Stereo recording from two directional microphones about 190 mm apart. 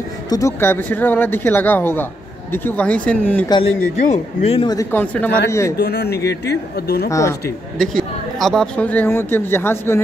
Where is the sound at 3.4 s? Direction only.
25° left (ahead or behind).